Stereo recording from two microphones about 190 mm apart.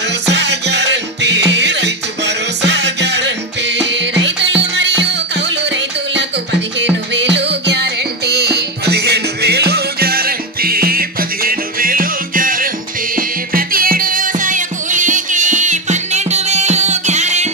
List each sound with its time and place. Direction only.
0.3 s music: 65° right (ahead or behind); by 17.5 s 35° right (ahead or behind)